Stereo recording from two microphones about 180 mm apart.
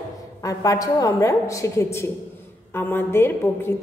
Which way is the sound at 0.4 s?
20° left (ahead or behind).